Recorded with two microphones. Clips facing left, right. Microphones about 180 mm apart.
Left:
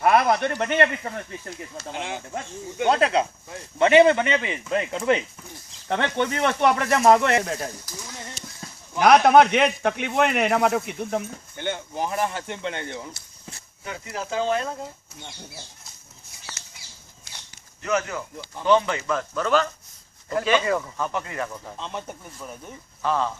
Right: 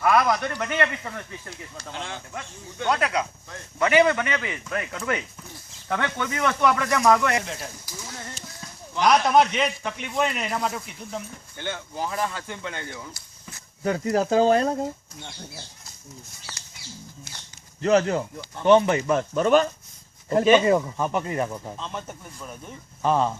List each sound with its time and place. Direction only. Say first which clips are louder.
0.0 s speech: left 2 dB; 30° left (ahead or behind)
1.8 s speech: left 3 dB; 15° left (ahead or behind)
2.7 s speech: left 4 dB; 25° left (ahead or behind)
7.4 s speech: left 6 dB; 50° left (ahead or behind)
9.0 s a man's voice: left 4 dB; 60° left (ahead or behind)
11.5 s speech: left 3 dB; 20° left (ahead or behind)
13.8 s speech: right 10 dB; 40° right (ahead or behind)
15.1 s speech: right 1 dB; 10° left (ahead or behind)
17.8 s speech: right 6 dB; 35° right (ahead or behind)
18.7 s speech: right 3 dB; 20° right (ahead or behind)
21.8 s speech: left 1 dB; 15° left (ahead or behind)
23.0 s speech: right 3 dB; 20° right (ahead or behind)